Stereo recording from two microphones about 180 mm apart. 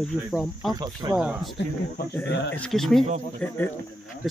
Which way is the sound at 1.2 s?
5° right (ahead or behind).